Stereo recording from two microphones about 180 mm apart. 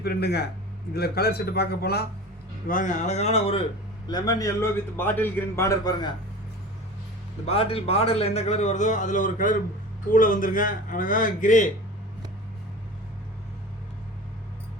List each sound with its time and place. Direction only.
0.0 s a man's voice: 65° left (ahead or behind)
2.6 s a man's voice: 45° left (ahead or behind)
4.1 s a man's voice: 20° left (ahead or behind)
7.4 s a man's voice: 35° left (ahead or behind)